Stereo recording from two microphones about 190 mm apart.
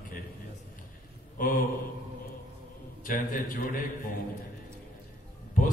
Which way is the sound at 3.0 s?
45° left (ahead or behind).